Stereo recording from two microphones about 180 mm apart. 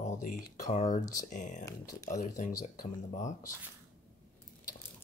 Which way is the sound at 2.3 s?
45° left (ahead or behind).